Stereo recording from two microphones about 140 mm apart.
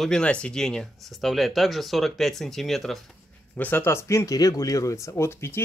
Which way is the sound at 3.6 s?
15° left (ahead or behind).